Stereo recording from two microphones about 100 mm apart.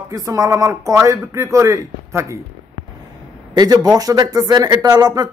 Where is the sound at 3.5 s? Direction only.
40° right (ahead or behind).